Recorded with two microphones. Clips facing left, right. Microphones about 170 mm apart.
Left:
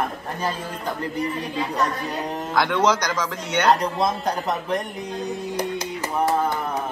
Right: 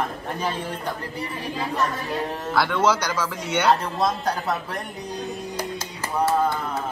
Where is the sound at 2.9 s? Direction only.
10° right (ahead or behind).